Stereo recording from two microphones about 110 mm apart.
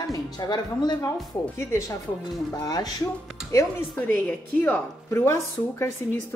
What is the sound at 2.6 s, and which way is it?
Speech, 35° left (ahead or behind).